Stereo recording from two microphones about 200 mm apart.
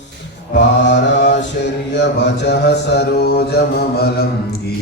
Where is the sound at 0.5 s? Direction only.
60° left (ahead or behind).